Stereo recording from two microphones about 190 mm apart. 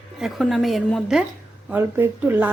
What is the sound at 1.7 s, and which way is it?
Speech, 10° right (ahead or behind).